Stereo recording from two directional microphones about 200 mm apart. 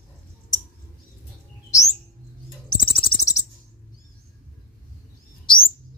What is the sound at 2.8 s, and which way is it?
Bird, 15° left (ahead or behind).